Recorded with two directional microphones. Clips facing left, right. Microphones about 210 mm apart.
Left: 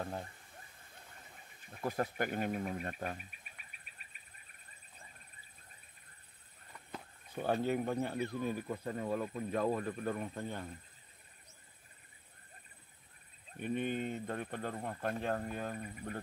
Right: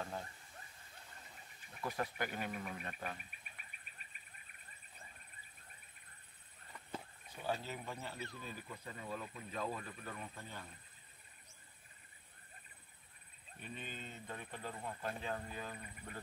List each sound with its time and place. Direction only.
1.7 s speech: 45° left (ahead or behind)
7.3 s speech: 55° left (ahead or behind)
13.6 s speech: 60° left (ahead or behind)